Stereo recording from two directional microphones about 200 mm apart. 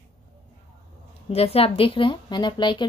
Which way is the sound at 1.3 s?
30° left (ahead or behind).